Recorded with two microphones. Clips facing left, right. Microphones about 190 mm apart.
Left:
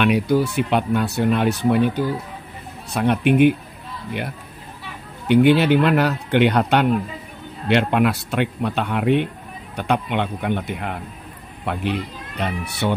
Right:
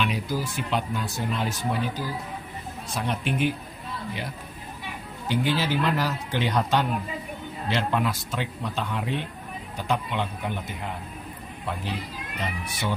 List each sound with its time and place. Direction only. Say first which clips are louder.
0.0 s speech: left 10 dB; 65° left (ahead or behind)
5.3 s speech: left 11 dB; 65° left (ahead or behind)